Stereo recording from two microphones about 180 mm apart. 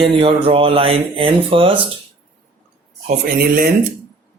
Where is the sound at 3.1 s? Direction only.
55° right (ahead or behind).